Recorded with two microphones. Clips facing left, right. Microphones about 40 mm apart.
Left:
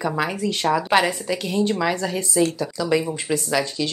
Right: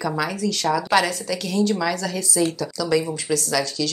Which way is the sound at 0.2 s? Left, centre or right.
Left.